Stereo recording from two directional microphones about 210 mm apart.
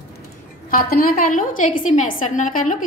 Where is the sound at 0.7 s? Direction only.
40° left (ahead or behind).